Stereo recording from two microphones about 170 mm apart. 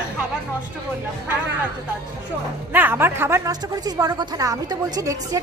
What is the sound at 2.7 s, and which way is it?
A woman's voice, 10° right (ahead or behind).